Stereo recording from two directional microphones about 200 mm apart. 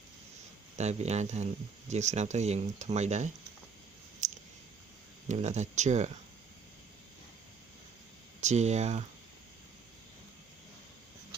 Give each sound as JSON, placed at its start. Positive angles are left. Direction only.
{"t": 0.7, "sound": "speech", "side_deg": -35}
{"t": 4.2, "sound": "a sound", "side_deg": -35}
{"t": 5.3, "sound": "speech", "side_deg": -35}
{"t": 8.4, "sound": "speech", "side_deg": -35}